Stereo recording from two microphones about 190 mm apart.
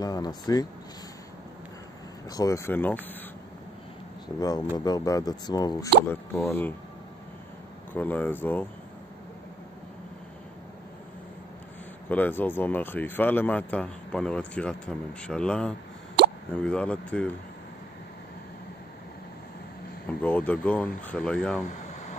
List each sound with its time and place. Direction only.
0.0 s speech: 20° left (ahead or behind)
2.3 s speech: 15° left (ahead or behind)
4.4 s speech: 20° left (ahead or behind)
7.9 s speech: 10° left (ahead or behind)
12.1 s speech: 10° left (ahead or behind)
20.2 s speech: 10° left (ahead or behind)